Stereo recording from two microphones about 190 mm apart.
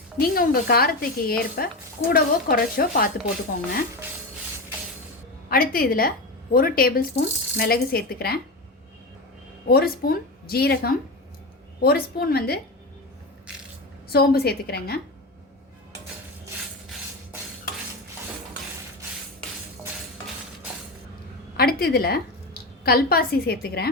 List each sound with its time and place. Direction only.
0.2 s speech: 50° left (ahead or behind)
5.5 s speech: 50° left (ahead or behind)
9.6 s speech: 55° left (ahead or behind)
14.1 s a woman's voice: 55° left (ahead or behind)
21.5 s a woman's voice: 55° left (ahead or behind)